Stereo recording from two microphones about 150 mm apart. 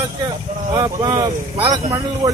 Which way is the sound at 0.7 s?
25° right (ahead or behind).